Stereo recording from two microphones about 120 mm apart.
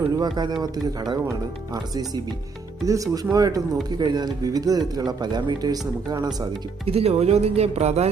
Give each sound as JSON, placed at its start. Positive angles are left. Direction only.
{"t": 0.1, "sound": "speech", "side_deg": -35}
{"t": 6.8, "sound": "speech", "side_deg": -55}